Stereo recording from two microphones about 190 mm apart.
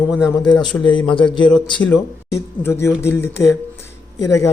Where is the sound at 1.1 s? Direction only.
25° left (ahead or behind).